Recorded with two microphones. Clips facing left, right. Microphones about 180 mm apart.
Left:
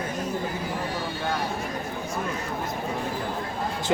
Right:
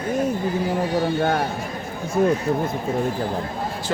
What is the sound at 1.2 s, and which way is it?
Speech, 55° right (ahead or behind).